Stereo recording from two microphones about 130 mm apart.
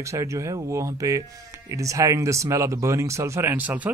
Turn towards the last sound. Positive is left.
turn(degrees=-10)  # may be behind; listen again after turning